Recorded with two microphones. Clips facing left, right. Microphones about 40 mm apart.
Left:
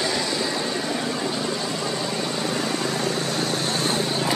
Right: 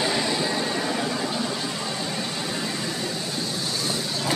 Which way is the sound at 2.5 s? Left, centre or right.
Left.